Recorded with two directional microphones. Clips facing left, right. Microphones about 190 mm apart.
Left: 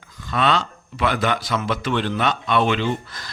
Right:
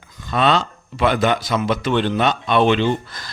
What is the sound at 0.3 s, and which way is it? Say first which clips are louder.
A man's voice: right 3 dB; 25° right (ahead or behind).